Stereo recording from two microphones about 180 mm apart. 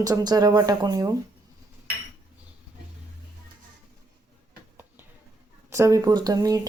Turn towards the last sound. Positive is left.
turn(degrees=-20)  # may be behind; listen again after turning